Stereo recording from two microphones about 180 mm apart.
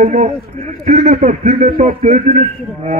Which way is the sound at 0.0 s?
40° right (ahead or behind).